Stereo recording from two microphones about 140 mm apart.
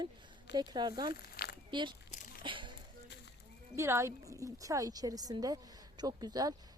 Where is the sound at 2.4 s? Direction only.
35° right (ahead or behind).